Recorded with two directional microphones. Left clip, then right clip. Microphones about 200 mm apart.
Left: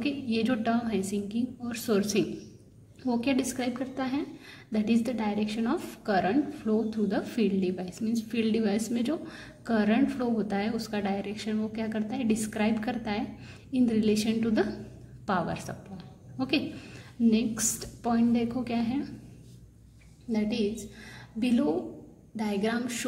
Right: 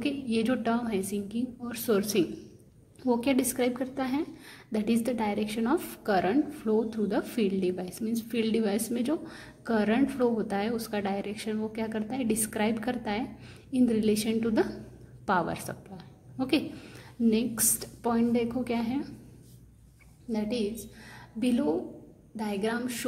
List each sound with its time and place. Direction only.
0.0 s a woman's voice: 20° right (ahead or behind)
15.2 s a sound: 20° right (ahead or behind)
17.3 s a woman's voice: 20° right (ahead or behind)
20.2 s a woman's voice: 15° right (ahead or behind)